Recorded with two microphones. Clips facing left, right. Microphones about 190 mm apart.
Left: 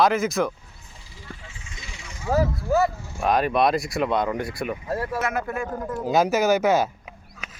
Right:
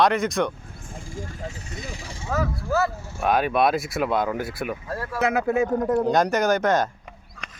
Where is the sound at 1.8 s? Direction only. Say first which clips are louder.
Right 3 dB; 35° right (ahead or behind).